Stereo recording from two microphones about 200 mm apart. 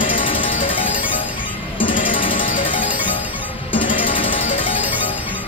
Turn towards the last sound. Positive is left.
turn(degrees=25)  # may be behind; listen again after turning